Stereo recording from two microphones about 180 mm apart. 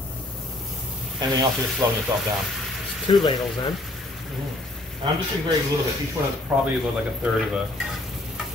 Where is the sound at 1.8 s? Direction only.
20° right (ahead or behind).